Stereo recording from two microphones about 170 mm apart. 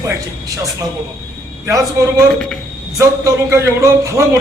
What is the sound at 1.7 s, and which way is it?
Speech, 20° right (ahead or behind).